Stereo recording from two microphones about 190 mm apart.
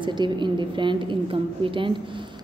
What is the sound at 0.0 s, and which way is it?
A woman's voice, 25° right (ahead or behind).